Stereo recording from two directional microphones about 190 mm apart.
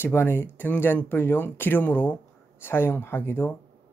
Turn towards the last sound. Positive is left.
turn(degrees=10)  # may be behind; listen again after turning